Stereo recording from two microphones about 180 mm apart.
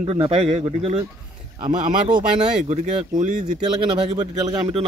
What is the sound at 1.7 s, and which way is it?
Speech, 45° right (ahead or behind).